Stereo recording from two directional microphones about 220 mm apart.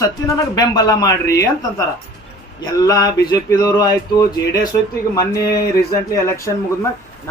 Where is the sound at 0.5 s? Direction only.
20° left (ahead or behind).